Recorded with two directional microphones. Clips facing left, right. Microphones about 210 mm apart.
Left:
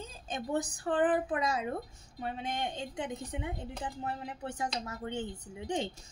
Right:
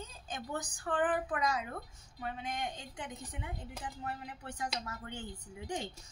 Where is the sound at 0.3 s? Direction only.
25° left (ahead or behind).